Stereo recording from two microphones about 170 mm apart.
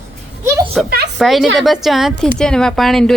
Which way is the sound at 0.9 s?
70° right (ahead or behind).